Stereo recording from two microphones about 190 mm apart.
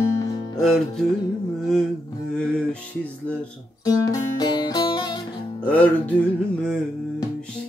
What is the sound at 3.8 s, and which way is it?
Music, 20° left (ahead or behind).